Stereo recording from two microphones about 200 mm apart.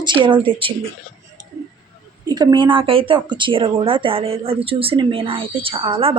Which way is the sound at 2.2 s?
20° right (ahead or behind).